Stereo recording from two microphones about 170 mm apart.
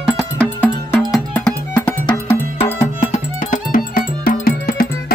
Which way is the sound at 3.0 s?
50° left (ahead or behind).